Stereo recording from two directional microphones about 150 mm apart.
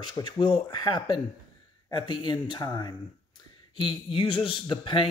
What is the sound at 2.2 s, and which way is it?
Speech, 30° left (ahead or behind).